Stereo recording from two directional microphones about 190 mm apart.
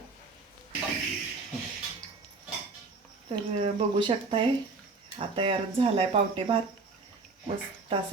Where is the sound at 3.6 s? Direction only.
25° right (ahead or behind).